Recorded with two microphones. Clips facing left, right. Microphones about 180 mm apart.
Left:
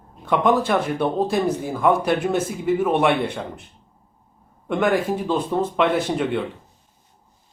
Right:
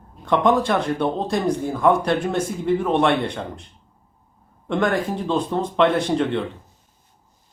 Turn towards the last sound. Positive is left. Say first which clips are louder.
# right 1 dB
turn(degrees=5)  # may be behind; listen again after turning